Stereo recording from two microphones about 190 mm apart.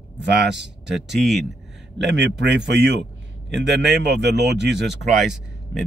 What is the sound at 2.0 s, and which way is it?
A man's voice, 65° right (ahead or behind).